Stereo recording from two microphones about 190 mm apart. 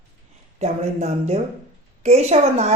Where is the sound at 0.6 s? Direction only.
35° right (ahead or behind).